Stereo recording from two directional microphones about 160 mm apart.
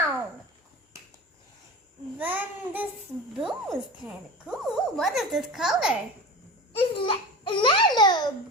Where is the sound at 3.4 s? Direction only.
Centre (ahead or behind).